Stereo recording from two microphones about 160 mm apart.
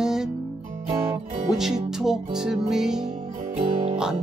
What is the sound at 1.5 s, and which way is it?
Music, 5° right (ahead or behind).